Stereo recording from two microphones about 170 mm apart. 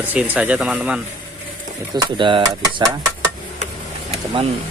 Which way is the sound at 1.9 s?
30° right (ahead or behind).